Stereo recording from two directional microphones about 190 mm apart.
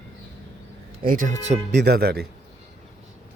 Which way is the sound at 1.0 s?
45° right (ahead or behind).